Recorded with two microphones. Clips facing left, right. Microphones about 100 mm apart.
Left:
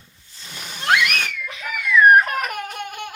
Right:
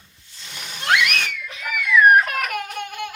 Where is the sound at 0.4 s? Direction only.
15° left (ahead or behind).